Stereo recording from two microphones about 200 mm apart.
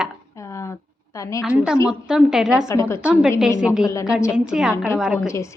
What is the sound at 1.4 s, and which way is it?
A woman's voice, 5° right (ahead or behind).